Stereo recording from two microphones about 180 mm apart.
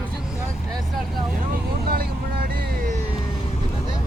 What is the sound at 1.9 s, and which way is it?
Vehicle, 55° right (ahead or behind).